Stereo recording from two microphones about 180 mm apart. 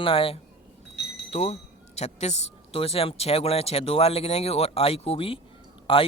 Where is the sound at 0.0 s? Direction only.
30° left (ahead or behind).